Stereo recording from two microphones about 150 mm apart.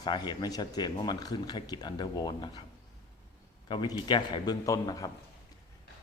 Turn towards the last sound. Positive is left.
turn(degrees=25)  # may be behind; listen again after turning